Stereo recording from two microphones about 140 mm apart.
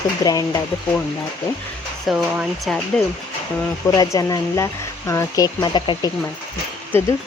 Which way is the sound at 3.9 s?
25° left (ahead or behind).